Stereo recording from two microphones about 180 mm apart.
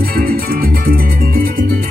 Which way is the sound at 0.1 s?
55° right (ahead or behind).